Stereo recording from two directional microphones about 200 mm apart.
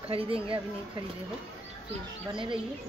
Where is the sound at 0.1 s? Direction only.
30° right (ahead or behind).